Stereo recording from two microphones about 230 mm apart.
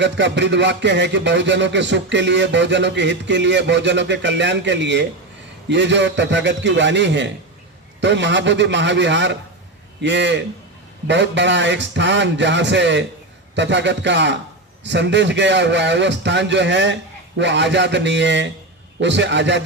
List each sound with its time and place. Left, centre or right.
0.0 s speech: right